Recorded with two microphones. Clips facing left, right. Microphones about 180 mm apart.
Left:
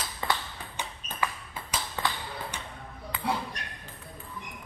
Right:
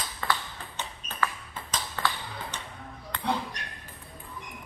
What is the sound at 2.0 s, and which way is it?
Tap, 15° left (ahead or behind).